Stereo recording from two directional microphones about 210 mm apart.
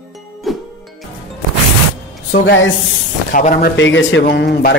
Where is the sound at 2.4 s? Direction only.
60° left (ahead or behind).